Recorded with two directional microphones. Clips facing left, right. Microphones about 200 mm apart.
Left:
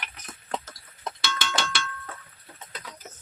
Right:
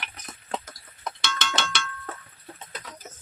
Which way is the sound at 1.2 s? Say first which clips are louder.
Even; 5° left (ahead or behind).